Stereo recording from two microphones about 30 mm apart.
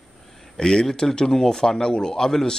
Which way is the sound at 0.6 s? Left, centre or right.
Left.